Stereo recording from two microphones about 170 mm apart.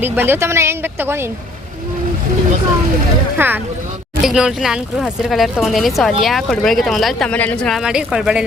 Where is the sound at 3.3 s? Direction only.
10° right (ahead or behind); by 7.8 s 5° left (ahead or behind).